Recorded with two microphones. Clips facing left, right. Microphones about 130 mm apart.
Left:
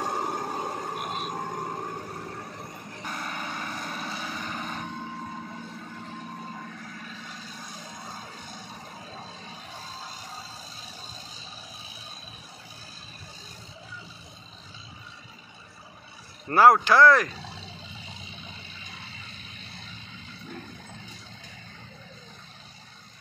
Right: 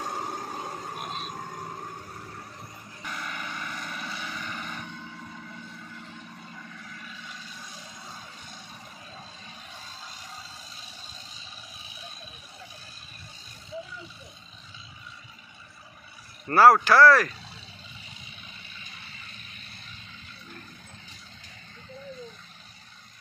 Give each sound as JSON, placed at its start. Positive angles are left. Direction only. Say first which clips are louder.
{"t": 0.0, "sound": "a sound", "louder": "left 4 dB", "side_deg": 45}
{"t": 3.0, "sound": "vehicle", "louder": "left 2 dB", "side_deg": 35}
{"t": 16.4, "sound": "speech", "louder": "right 1 dB", "side_deg": 15}